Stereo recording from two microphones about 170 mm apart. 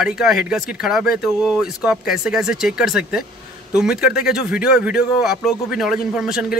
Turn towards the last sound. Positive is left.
turn(degrees=-5)  # may be behind; listen again after turning